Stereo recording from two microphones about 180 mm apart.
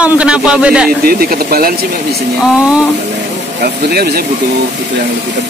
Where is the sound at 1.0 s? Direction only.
55° right (ahead or behind).